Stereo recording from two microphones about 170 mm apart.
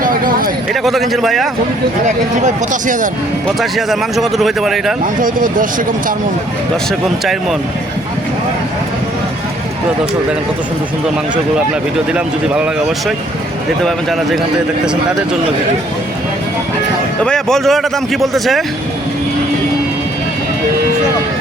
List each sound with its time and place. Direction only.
0.0 s speech: 55° right (ahead or behind)
0.7 s a man's voice: centre (ahead or behind)
2.0 s speech: 45° right (ahead or behind)
3.6 s a man's voice: centre (ahead or behind)
5.2 s speech: 55° right (ahead or behind)
11.9 s a man's voice: 5° right (ahead or behind)
17.2 s a man's voice: 5° left (ahead or behind)